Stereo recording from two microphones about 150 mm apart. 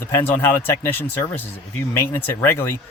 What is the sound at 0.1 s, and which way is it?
Speech, 15° left (ahead or behind).